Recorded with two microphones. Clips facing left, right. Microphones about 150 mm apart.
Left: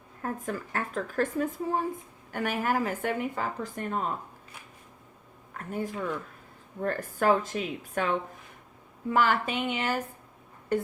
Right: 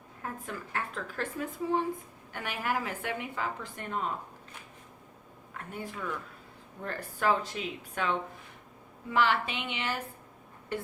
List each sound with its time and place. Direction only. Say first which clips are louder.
0.2 s a woman's voice: left 6 dB; 45° left (ahead or behind)
5.5 s a woman's voice: left 6 dB; 45° left (ahead or behind)